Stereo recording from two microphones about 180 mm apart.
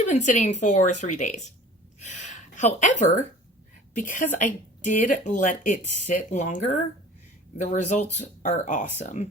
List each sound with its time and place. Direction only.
0.1 s speech: 40° left (ahead or behind)